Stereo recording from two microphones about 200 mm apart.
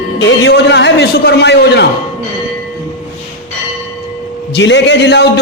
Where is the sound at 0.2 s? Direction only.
65° left (ahead or behind).